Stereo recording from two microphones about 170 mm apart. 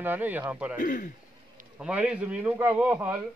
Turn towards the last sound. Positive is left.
turn(degrees=-10)  # may be behind; listen again after turning